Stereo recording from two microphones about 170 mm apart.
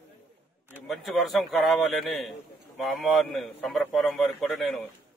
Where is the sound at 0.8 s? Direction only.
Centre (ahead or behind).